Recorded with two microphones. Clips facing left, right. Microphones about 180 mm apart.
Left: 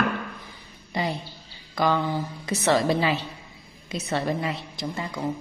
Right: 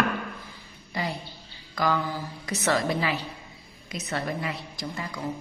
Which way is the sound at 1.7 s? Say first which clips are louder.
Left 3 dB; 25° left (ahead or behind).